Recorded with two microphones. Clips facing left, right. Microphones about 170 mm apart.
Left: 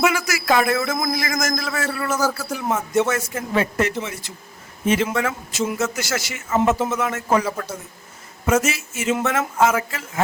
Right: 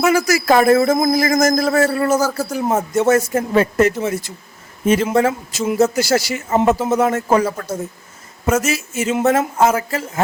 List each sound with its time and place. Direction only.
0.0 s a man's voice: 40° right (ahead or behind)